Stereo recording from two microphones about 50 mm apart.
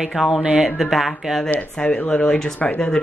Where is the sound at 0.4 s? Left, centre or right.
Centre.